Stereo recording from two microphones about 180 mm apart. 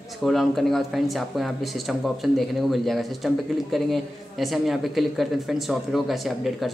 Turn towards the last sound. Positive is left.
turn(degrees=0)  # may be behind; listen again after turning